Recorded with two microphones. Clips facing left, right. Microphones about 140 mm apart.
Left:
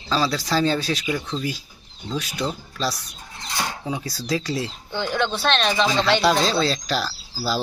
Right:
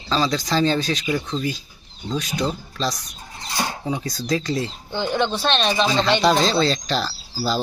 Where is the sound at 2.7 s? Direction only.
5° left (ahead or behind).